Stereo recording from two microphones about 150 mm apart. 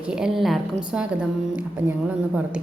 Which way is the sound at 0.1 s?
5° right (ahead or behind).